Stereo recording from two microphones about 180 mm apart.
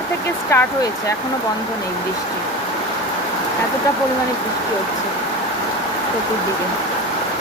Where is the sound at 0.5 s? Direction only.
15° left (ahead or behind).